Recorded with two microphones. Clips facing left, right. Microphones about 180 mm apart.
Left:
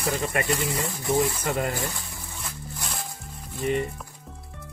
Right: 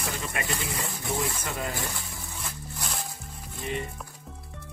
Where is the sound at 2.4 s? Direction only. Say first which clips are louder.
Left 1 dB; centre (ahead or behind).